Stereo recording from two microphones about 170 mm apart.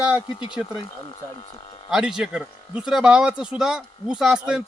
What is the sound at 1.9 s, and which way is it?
Speech, 5° right (ahead or behind).